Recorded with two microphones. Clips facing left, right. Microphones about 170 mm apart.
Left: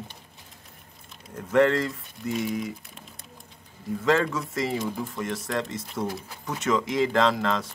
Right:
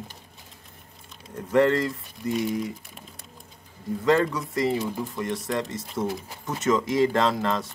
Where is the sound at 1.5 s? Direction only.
Centre (ahead or behind).